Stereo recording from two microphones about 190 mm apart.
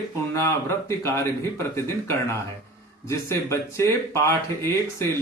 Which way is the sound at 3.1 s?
15° left (ahead or behind).